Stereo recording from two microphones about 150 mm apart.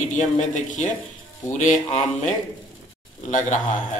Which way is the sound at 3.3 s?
55° left (ahead or behind).